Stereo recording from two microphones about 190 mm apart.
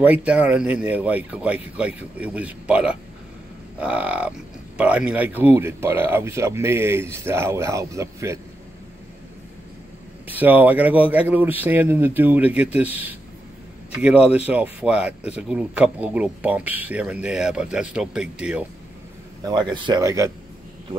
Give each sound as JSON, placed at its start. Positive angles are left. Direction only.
{"t": 0.0, "sound": "speech", "side_deg": -10}
{"t": 10.2, "sound": "speech", "side_deg": -10}
{"t": 19.4, "sound": "speech", "side_deg": -20}